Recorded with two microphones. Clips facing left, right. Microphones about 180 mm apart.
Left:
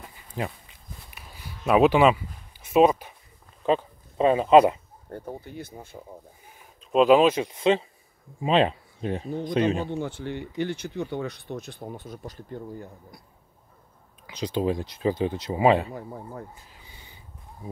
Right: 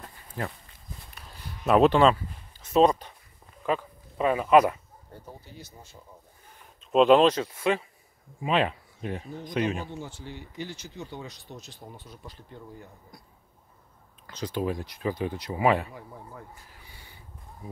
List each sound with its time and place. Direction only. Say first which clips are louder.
0.4 s speech: left 3 dB; 20° left (ahead or behind)
1.1 s a sound: left 1 dB; 5° left (ahead or behind)
2.6 s music: left 2 dB; 10° left (ahead or behind)
3.6 s speech: left 5 dB; 25° left (ahead or behind)
5.1 s speech: left 9 dB; 55° left (ahead or behind)
6.6 s a sound: even; centre (ahead or behind)
7.4 s speech: left 4 dB; 20° left (ahead or behind)
9.8 s speech: left 8 dB; 60° left (ahead or behind)
14.2 s speech: left 4 dB; 15° left (ahead or behind)
15.9 s speech: left 7 dB; 45° left (ahead or behind)
16.5 s a sound: left 1 dB; 20° left (ahead or behind)